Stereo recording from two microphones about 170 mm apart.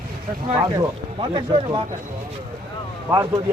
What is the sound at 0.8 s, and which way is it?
Speech, 30° right (ahead or behind).